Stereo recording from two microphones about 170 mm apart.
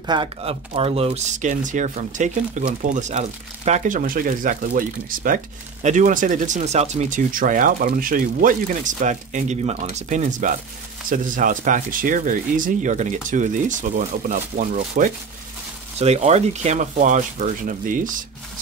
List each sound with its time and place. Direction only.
0.0 s speech: 25° right (ahead or behind); by 15.0 s 50° right (ahead or behind)
16.0 s speech: 40° right (ahead or behind)